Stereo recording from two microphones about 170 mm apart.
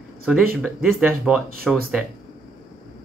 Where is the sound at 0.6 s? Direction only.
5° right (ahead or behind).